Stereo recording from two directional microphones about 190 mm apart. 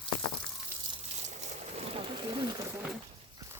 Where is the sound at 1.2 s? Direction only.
40° right (ahead or behind).